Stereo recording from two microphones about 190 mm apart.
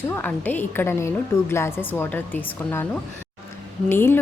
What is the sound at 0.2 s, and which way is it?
A woman's voice, 10° left (ahead or behind).